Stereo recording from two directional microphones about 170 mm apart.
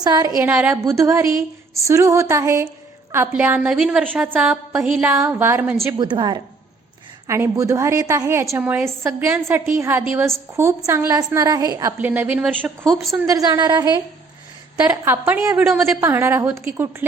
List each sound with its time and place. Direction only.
0.0 s a woman's voice: 25° right (ahead or behind)
0.4 s a woman's voice: 10° right (ahead or behind)
5.8 s a woman's voice: 25° right (ahead or behind)
7.3 s a woman's voice: 15° right (ahead or behind)
11.9 s a woman's voice: 10° right (ahead or behind)
13.1 s a woman's voice: 20° right (ahead or behind)
14.8 s a woman's voice: 15° right (ahead or behind)